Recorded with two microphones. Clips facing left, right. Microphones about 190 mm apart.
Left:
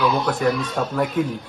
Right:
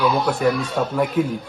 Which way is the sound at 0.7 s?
5° right (ahead or behind).